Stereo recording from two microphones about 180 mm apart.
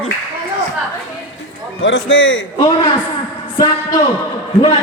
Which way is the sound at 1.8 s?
90° left.